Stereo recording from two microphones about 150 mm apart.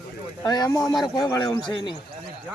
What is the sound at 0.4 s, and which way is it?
Speech, 25° left (ahead or behind).